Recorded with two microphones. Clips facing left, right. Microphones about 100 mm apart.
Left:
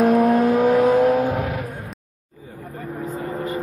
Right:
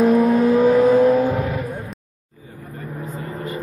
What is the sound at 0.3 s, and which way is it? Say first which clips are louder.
Vehicle: right 1 dB; 55° left (ahead or behind).